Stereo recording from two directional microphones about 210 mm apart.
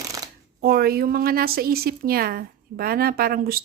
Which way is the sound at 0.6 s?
45° right (ahead or behind).